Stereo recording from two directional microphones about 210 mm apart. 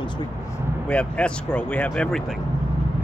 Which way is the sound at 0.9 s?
5° left (ahead or behind).